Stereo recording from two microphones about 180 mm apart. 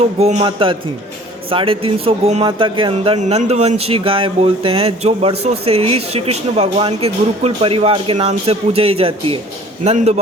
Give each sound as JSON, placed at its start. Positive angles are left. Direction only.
{"t": 0.2, "sound": "speech", "side_deg": -35}